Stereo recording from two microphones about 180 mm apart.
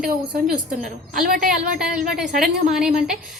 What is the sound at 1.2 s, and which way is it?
Speech, 55° right (ahead or behind).